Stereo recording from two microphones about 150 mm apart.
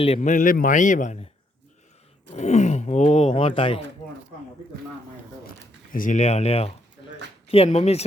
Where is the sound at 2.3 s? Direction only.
50° left (ahead or behind).